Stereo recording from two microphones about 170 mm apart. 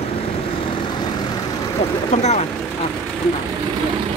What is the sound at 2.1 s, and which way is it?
Vehicle, 40° left (ahead or behind).